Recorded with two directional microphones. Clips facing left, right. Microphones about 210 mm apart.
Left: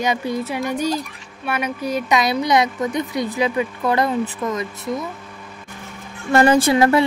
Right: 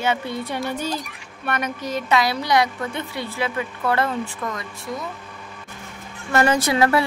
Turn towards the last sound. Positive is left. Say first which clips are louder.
# left 4 dB
turn(degrees=20)  # may be behind; listen again after turning